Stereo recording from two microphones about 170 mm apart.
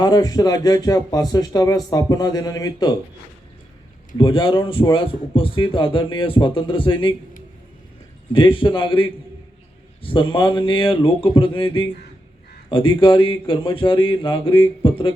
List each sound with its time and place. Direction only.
0.0 s speech: 25° left (ahead or behind)
4.2 s speech: 30° left (ahead or behind)
8.3 s speech: 30° left (ahead or behind)